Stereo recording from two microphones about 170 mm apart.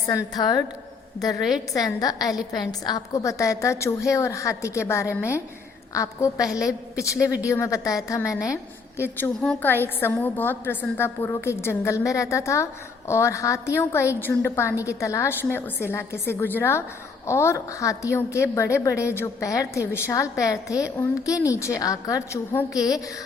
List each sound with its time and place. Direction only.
0.3 s a woman's voice: 25° left (ahead or behind)
1.7 s a woman's voice: 20° left (ahead or behind)
9.1 s a woman's voice: 10° left (ahead or behind)